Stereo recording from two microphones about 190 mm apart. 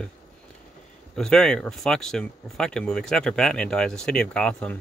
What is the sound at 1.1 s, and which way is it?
Speech, 5° left (ahead or behind).